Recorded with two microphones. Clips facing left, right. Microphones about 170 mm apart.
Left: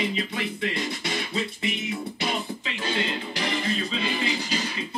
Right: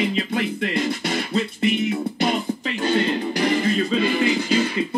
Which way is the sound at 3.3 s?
50° right (ahead or behind).